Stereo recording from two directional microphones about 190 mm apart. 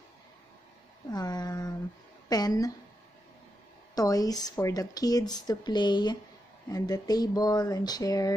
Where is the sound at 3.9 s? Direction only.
20° left (ahead or behind).